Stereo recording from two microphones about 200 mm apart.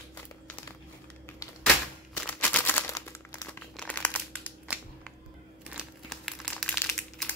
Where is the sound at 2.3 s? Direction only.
5° left (ahead or behind).